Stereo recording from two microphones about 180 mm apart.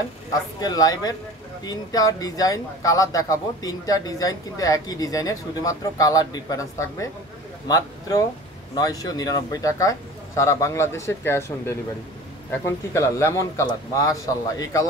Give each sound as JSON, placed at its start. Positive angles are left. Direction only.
{"t": 0.3, "sound": "a man's voice", "side_deg": 20}